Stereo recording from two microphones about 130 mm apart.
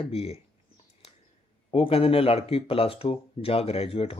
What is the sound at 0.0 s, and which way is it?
Speech, 50° left (ahead or behind).